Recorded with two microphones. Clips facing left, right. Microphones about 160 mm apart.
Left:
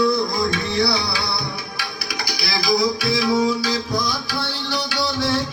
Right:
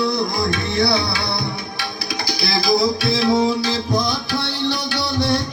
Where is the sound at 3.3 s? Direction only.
20° right (ahead or behind).